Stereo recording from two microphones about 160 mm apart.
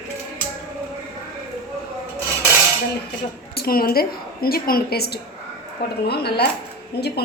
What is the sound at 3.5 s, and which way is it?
A woman's voice, 70° left (ahead or behind).